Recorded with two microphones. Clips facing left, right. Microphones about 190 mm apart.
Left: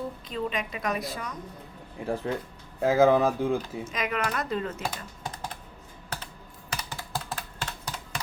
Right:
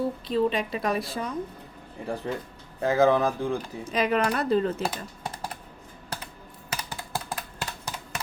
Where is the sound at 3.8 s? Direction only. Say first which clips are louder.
Right 6 dB; 30° right (ahead or behind).